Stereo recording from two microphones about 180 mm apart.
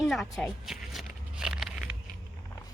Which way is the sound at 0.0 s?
Centre (ahead or behind).